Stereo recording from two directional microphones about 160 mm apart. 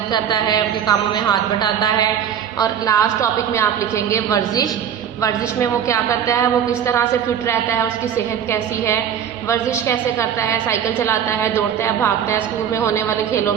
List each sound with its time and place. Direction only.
0.1 s a woman's voice: 25° left (ahead or behind)
9.5 s a woman's voice: 15° left (ahead or behind)